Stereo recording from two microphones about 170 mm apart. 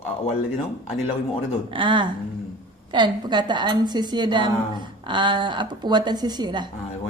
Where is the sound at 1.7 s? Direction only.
30° right (ahead or behind).